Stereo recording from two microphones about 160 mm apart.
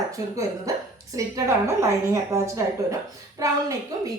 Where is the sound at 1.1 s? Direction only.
20° right (ahead or behind).